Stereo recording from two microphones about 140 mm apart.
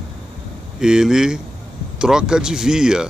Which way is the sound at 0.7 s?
5° right (ahead or behind).